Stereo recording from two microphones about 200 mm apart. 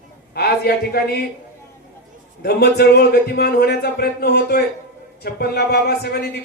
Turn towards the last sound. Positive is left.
turn(degrees=55)  # may be behind; listen again after turning